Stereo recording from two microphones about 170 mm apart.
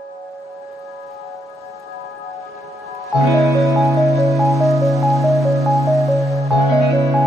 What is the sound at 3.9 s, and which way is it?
Music, centre (ahead or behind).